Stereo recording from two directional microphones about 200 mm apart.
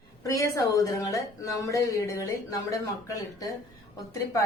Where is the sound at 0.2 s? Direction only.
15° left (ahead or behind).